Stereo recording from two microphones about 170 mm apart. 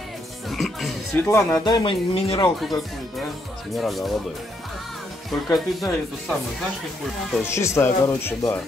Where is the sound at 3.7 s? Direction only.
Centre (ahead or behind).